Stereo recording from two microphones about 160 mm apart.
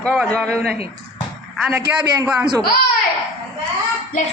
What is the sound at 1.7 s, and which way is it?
Speech, 20° right (ahead or behind).